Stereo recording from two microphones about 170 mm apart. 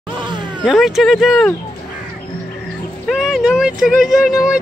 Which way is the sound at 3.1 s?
Centre (ahead or behind).